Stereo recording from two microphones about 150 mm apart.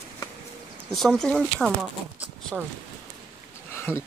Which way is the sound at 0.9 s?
Centre (ahead or behind).